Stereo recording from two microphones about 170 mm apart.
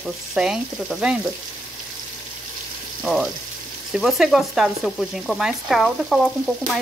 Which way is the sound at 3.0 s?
Centre (ahead or behind).